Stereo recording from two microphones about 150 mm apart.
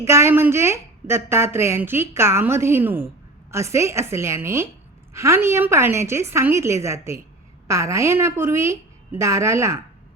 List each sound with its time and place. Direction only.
0.0 s a woman's voice: 20° right (ahead or behind)